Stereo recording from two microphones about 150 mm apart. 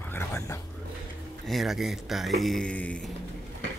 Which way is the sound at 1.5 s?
Centre (ahead or behind).